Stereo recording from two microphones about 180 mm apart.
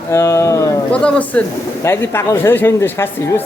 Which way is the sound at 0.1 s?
15° left (ahead or behind).